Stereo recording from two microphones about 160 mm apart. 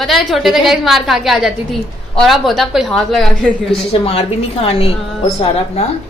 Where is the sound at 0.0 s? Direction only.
Centre (ahead or behind).